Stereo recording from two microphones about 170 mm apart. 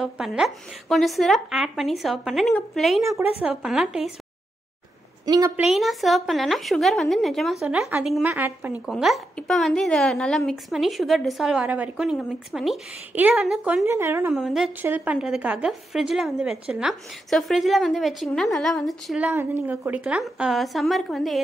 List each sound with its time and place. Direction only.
0.0 s a woman's voice: 5° right (ahead or behind)
3.0 s a woman's voice: 15° right (ahead or behind)
3.6 s a woman's voice: 5° right (ahead or behind)
5.2 s a woman's voice: 20° right (ahead or behind)
5.6 s a woman's voice: centre (ahead or behind)
13.8 s a woman's voice: 15° right (ahead or behind)
14.3 s a woman's voice: centre (ahead or behind)